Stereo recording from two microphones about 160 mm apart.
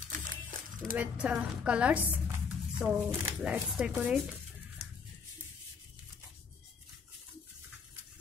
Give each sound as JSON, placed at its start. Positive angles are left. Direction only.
{"t": 0.1, "sound": "crumpling", "side_deg": -60}
{"t": 0.9, "sound": "speech", "side_deg": -5}